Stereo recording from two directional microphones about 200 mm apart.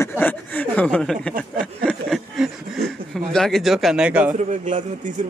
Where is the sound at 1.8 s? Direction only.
Centre (ahead or behind).